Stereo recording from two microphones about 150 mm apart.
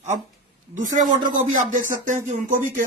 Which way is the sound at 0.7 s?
55° right (ahead or behind).